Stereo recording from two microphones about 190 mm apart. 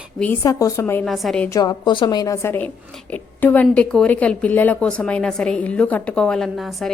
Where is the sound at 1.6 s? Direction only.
20° left (ahead or behind).